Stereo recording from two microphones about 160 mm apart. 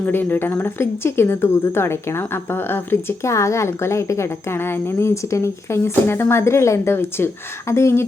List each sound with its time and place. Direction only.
0.0 s speech: 10° left (ahead or behind)